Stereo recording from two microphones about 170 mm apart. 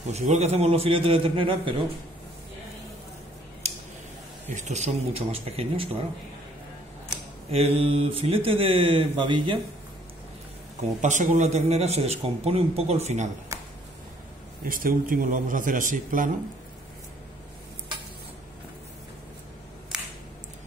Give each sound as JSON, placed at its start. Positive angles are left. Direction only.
{"t": 0.1, "sound": "a man's voice", "side_deg": -40}
{"t": 3.6, "sound": "a sound", "side_deg": -40}
{"t": 4.6, "sound": "a man's voice", "side_deg": -40}
{"t": 7.5, "sound": "a man's voice", "side_deg": -35}
{"t": 10.8, "sound": "a man's voice", "side_deg": -45}
{"t": 13.5, "sound": "a sound", "side_deg": -20}
{"t": 14.6, "sound": "a man's voice", "side_deg": -55}